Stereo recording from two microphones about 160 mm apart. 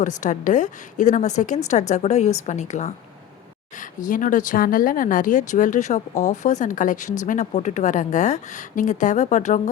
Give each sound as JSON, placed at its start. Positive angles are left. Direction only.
{"t": 0.0, "sound": "speech", "side_deg": 50}